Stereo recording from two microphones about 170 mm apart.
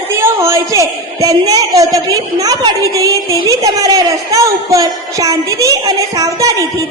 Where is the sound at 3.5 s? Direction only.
20° right (ahead or behind).